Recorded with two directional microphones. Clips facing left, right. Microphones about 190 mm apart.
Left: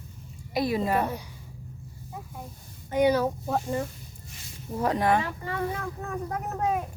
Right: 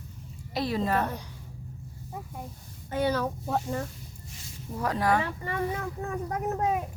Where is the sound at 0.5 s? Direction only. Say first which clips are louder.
Left 2 dB; 10° left (ahead or behind).